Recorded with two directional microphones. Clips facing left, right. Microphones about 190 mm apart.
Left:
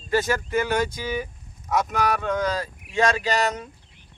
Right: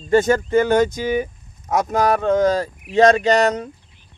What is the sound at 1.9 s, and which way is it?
Speech, 45° right (ahead or behind).